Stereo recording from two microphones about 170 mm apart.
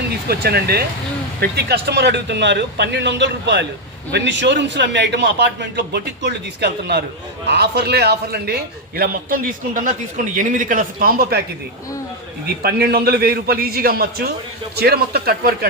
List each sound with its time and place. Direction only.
0.3 s a man's voice: 65° right (ahead or behind)
9.0 s a man's voice: 55° right (ahead or behind)
12.6 s a man's voice: 65° right (ahead or behind)